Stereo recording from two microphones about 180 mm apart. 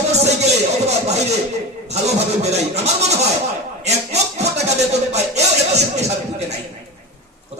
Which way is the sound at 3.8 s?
35° right (ahead or behind).